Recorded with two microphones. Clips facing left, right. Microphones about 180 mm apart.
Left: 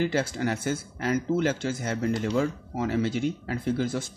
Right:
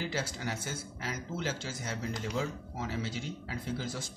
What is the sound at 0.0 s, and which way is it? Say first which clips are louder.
Speech: left 10 dB; 55° left (ahead or behind).